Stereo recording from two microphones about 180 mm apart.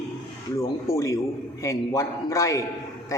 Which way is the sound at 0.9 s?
15° left (ahead or behind).